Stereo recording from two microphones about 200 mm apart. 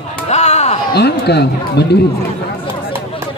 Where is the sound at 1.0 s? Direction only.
55° left (ahead or behind).